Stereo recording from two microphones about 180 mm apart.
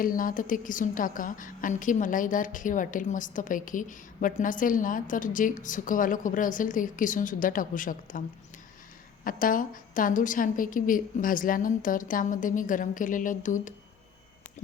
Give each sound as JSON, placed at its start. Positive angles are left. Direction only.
{"t": 0.0, "sound": "a woman's voice", "side_deg": 50}
{"t": 9.2, "sound": "a woman's voice", "side_deg": 50}